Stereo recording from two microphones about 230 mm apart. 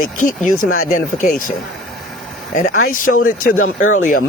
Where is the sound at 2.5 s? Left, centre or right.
Left.